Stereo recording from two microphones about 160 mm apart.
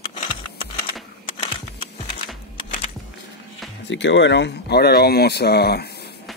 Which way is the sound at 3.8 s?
90° left.